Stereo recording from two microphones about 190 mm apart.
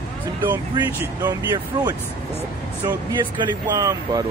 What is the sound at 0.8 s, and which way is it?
Speech, 20° right (ahead or behind).